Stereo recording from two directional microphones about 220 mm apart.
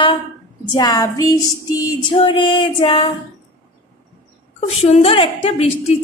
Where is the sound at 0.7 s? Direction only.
20° left (ahead or behind).